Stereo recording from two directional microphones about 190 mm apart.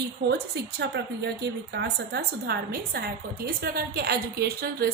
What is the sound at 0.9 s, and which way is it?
A woman's voice, 60° right (ahead or behind).